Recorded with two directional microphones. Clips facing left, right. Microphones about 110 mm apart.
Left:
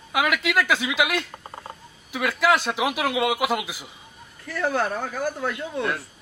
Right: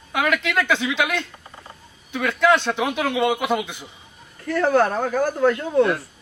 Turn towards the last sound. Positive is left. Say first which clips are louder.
# right 10 dB
turn(degrees=-45)  # may be behind; listen again after turning